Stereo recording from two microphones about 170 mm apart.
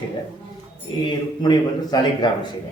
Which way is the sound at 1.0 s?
25° left (ahead or behind).